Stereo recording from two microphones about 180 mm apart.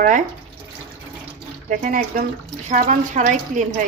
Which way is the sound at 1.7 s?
50° right (ahead or behind).